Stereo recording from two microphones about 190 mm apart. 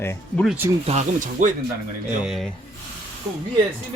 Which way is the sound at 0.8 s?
40° right (ahead or behind).